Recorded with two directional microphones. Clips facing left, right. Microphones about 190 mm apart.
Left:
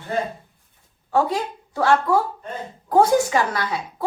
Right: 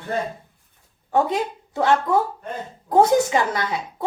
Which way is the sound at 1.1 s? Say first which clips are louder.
Even; 20° right (ahead or behind).